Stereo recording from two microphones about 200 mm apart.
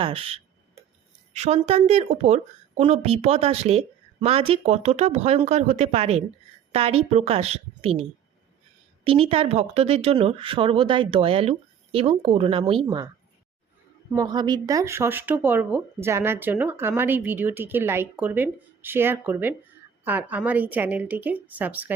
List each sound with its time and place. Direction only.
0.0 s speech: 30° right (ahead or behind)
9.0 s speech: 30° right (ahead or behind)
14.2 s speech: 20° right (ahead or behind)